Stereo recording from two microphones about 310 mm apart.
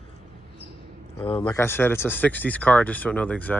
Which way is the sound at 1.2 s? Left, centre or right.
Centre.